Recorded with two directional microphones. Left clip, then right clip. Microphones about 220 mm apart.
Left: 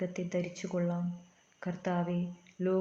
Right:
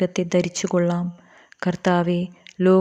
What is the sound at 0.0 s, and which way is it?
Speech, 45° right (ahead or behind).